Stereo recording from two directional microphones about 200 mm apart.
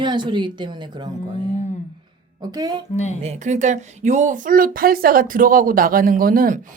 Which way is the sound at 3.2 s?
35° right (ahead or behind).